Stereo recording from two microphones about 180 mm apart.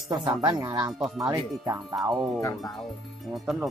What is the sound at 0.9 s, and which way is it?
Speech, 5° right (ahead or behind).